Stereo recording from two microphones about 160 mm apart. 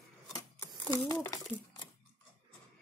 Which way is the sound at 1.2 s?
20° left (ahead or behind).